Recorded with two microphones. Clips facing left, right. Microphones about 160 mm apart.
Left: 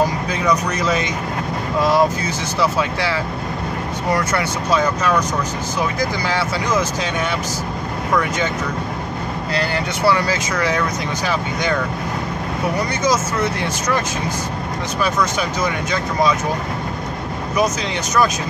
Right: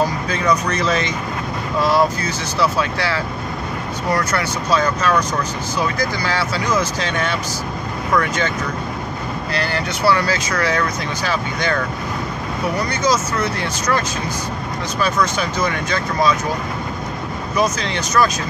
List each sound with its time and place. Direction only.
0.7 s speech: 15° left (ahead or behind)
4.2 s speech: 25° left (ahead or behind)
9.5 s speech: 20° left (ahead or behind)
13.4 s speech: 25° left (ahead or behind)